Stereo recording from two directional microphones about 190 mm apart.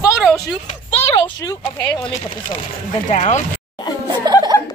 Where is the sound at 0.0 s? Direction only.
Centre (ahead or behind).